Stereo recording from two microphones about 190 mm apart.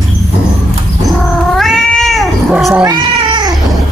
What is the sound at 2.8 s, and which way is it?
Cat, 20° right (ahead or behind).